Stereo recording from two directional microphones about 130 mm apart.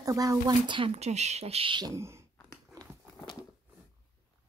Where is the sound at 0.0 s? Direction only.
25° right (ahead or behind).